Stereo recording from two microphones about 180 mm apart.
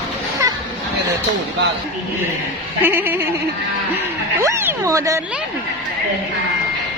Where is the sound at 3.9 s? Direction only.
15° right (ahead or behind).